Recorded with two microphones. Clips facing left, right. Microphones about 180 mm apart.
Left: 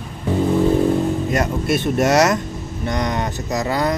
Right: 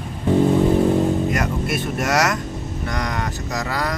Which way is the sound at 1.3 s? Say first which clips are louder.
Left 3 dB; 30° left (ahead or behind).